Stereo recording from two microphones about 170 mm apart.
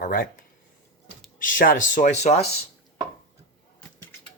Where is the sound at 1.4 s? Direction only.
55° left (ahead or behind).